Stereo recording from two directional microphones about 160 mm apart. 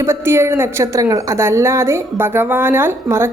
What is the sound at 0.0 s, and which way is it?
Speech, 15° right (ahead or behind).